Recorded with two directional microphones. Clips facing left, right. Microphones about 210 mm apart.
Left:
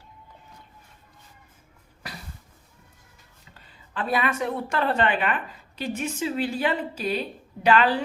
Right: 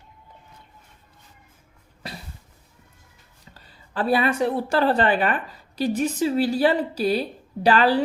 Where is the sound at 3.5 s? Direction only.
35° right (ahead or behind).